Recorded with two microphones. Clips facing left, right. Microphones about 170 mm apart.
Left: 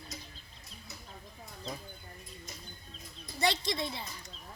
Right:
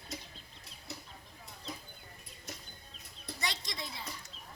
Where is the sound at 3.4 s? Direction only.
30° left (ahead or behind).